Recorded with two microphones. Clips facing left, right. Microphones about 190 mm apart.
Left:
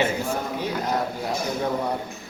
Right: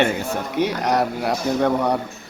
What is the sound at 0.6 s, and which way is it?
A man's voice, 75° right (ahead or behind).